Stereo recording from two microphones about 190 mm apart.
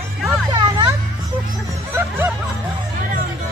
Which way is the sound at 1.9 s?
10° right (ahead or behind).